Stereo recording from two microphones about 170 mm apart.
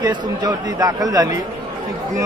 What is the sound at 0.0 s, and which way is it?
Speech, 20° right (ahead or behind).